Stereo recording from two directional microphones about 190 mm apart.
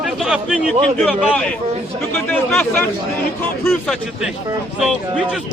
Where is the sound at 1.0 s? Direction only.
5° left (ahead or behind).